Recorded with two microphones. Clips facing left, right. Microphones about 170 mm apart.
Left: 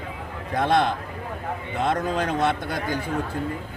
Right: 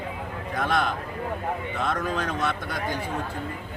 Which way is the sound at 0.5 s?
30° left (ahead or behind).